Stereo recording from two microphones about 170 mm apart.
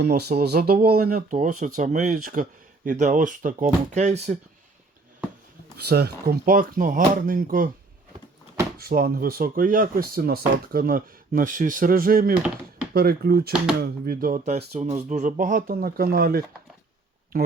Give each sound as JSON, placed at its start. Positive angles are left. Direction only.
{"t": 0.0, "sound": "speech", "side_deg": -70}
{"t": 5.7, "sound": "speech", "side_deg": -70}
{"t": 8.8, "sound": "speech", "side_deg": -60}